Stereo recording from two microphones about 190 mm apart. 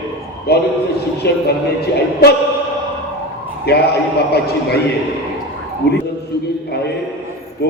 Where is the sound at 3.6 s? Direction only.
55° left (ahead or behind).